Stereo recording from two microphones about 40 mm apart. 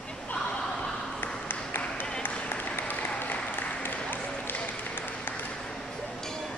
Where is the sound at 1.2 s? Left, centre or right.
Left.